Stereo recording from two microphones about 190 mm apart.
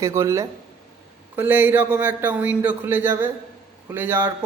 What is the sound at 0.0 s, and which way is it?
A man's voice, 15° right (ahead or behind).